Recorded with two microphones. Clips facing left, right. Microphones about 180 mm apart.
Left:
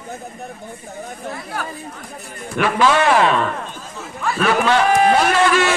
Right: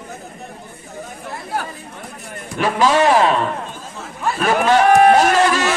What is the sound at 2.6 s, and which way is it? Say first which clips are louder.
Speech: right 1 dB; 35° right (ahead or behind).